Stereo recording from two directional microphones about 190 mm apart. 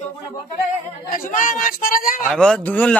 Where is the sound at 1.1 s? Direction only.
45° left (ahead or behind).